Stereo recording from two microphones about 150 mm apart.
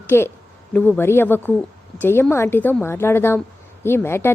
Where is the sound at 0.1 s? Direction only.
15° left (ahead or behind).